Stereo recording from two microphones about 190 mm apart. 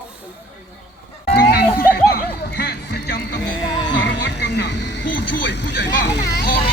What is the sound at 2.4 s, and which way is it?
Speech, 55° left (ahead or behind).